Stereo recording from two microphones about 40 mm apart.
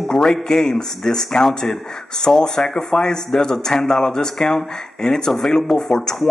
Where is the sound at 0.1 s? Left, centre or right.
Centre.